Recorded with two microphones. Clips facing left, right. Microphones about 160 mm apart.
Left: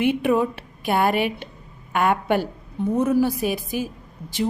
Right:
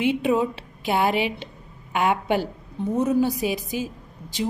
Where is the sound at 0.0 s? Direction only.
55° left (ahead or behind).